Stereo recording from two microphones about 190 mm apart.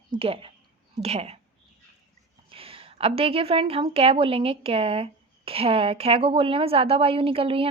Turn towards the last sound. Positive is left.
turn(degrees=-30)  # may be behind; listen again after turning